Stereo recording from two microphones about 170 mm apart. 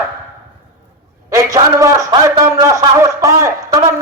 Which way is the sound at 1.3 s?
20° right (ahead or behind).